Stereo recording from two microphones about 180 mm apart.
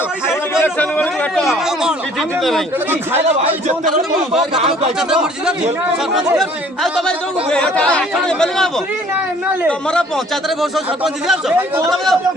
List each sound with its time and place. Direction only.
0.5 s a sound: 10° left (ahead or behind)
2.4 s a man's voice: centre (ahead or behind)
4.5 s speech: 35° right (ahead or behind)
4.9 s a man's voice: 5° right (ahead or behind)